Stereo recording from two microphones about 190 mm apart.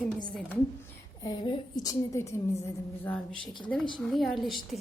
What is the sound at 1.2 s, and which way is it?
A woman's voice, 20° left (ahead or behind).